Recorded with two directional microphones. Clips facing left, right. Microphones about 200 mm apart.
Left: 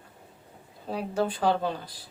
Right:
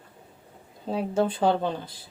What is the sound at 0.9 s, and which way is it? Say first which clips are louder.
Speech: right 3 dB; 25° right (ahead or behind).